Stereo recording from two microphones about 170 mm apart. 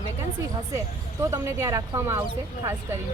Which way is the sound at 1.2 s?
20° right (ahead or behind).